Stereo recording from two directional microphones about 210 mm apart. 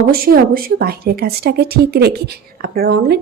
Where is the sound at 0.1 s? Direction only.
45° right (ahead or behind).